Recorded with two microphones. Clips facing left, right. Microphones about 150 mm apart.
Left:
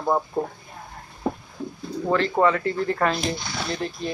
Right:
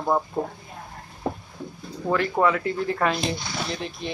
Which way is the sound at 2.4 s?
5° right (ahead or behind).